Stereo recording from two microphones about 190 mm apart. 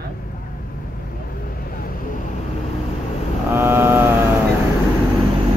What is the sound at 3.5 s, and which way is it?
Speech, 10° right (ahead or behind).